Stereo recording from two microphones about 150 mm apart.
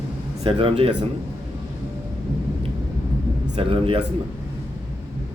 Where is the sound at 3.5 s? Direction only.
40° right (ahead or behind).